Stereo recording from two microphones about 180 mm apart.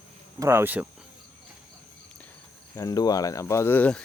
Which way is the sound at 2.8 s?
20° left (ahead or behind).